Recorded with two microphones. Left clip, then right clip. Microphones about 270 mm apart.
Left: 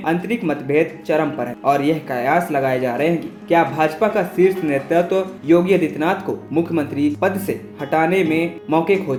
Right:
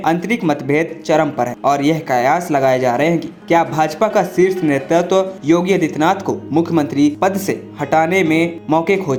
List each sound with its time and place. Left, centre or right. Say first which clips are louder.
0.0 s speech: right 4 dB; right